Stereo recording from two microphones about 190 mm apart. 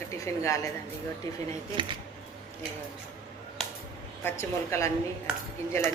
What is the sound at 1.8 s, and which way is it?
Speech, 25° right (ahead or behind).